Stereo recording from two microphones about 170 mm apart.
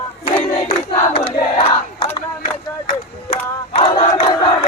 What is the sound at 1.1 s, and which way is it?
Crowd, 30° left (ahead or behind).